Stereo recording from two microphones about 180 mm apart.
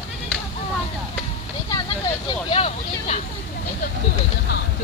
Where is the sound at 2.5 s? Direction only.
35° left (ahead or behind).